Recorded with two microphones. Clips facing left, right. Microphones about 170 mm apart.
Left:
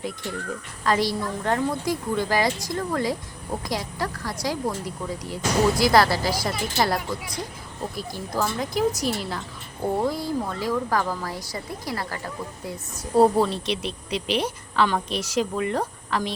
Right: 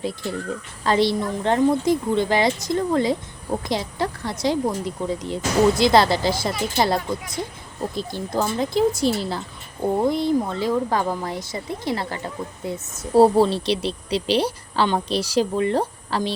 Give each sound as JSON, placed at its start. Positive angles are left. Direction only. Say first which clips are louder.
{"t": 0.9, "sound": "speech", "louder": "right 4 dB", "side_deg": -25}